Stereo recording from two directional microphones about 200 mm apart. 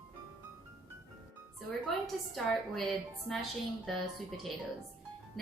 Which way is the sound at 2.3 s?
Centre (ahead or behind).